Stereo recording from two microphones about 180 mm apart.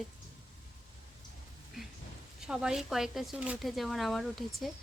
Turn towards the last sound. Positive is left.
turn(degrees=0)  # may be behind; listen again after turning